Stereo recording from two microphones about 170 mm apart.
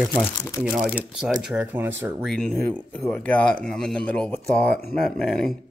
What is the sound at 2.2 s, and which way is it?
Speech, centre (ahead or behind).